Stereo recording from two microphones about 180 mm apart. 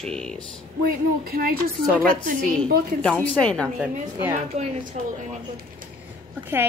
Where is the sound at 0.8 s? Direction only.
55° right (ahead or behind).